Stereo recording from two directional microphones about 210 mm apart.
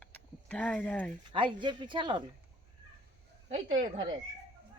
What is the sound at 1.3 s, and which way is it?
Speech, 20° right (ahead or behind).